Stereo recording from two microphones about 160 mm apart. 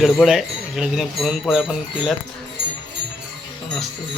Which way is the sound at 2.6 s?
90° right.